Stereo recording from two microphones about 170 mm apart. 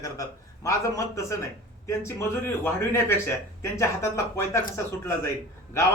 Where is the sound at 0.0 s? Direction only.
20° left (ahead or behind).